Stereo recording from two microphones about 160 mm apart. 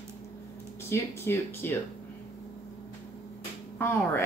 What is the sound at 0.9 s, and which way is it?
Speech, 15° left (ahead or behind).